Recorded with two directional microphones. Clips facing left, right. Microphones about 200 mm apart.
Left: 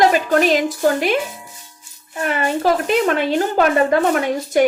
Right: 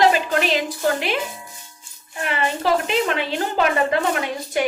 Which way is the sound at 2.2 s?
45° left (ahead or behind).